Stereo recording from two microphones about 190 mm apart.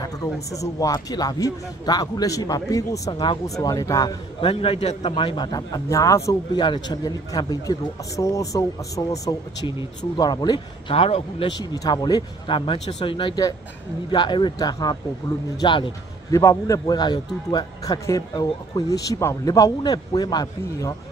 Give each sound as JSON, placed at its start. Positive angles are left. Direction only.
{"t": 0.0, "sound": "speech", "side_deg": 15}
{"t": 11.6, "sound": "speech", "side_deg": 20}